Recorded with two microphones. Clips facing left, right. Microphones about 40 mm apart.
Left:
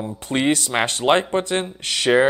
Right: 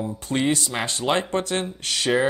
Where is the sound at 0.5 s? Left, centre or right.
Left.